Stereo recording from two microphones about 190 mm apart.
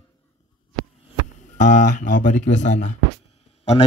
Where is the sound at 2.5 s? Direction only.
70° left (ahead or behind).